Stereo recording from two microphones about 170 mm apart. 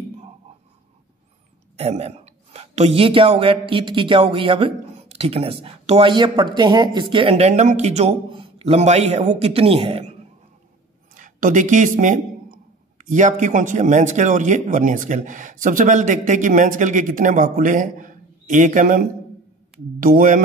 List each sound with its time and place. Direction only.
1.8 s a woman's voice: 40° right (ahead or behind)
11.1 s speech: 50° right (ahead or behind)